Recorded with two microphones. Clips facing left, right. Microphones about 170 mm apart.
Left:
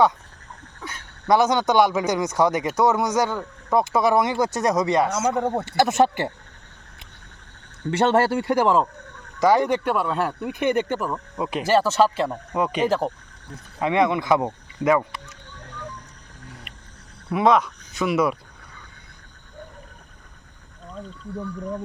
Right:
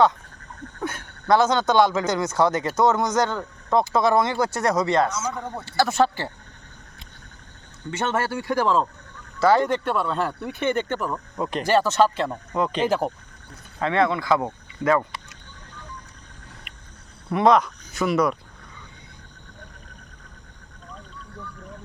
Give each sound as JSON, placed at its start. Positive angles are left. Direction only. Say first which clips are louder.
{"t": 0.8, "sound": "a sound", "louder": "right 8 dB", "side_deg": -50}
{"t": 1.3, "sound": "speech", "louder": "even", "side_deg": 15}
{"t": 5.4, "sound": "speech", "louder": "left 9 dB", "side_deg": 65}
{"t": 5.7, "sound": "speech", "louder": "left 1 dB", "side_deg": 20}
{"t": 7.9, "sound": "speech", "louder": "left 6 dB", "side_deg": 35}
{"t": 12.9, "sound": "speech", "louder": "even", "side_deg": 0}
{"t": 13.7, "sound": "speech", "louder": "left 1 dB", "side_deg": 15}
{"t": 17.2, "sound": "speech", "louder": "right 1 dB", "side_deg": 5}